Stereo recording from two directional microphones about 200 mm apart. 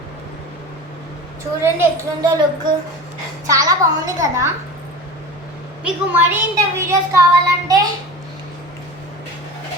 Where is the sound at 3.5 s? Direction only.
15° right (ahead or behind).